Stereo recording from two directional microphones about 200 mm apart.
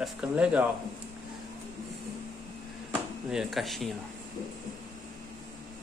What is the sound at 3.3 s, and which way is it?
Speech, centre (ahead or behind).